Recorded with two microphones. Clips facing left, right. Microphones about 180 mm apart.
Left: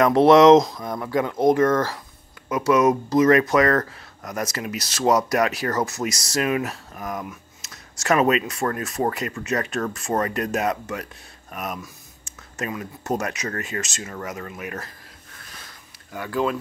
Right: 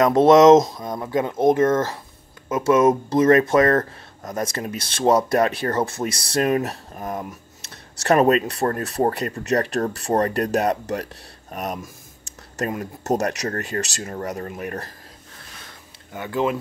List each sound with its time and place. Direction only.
0.0 s speech: 20° right (ahead or behind); by 14.9 s 40° right (ahead or behind)
16.1 s speech: 25° right (ahead or behind)